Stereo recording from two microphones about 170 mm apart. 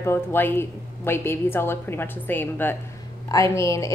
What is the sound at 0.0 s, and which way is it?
Speech, 15° left (ahead or behind).